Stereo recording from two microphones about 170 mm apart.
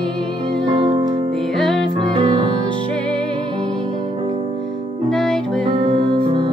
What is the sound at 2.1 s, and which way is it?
Music, 30° right (ahead or behind).